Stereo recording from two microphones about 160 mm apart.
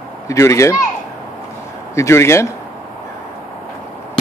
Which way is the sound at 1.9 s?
15° left (ahead or behind).